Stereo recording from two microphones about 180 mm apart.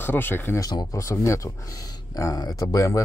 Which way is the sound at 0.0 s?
10° left (ahead or behind).